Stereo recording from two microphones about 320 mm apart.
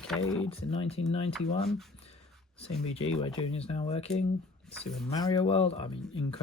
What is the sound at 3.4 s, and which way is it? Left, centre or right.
Speech, centre.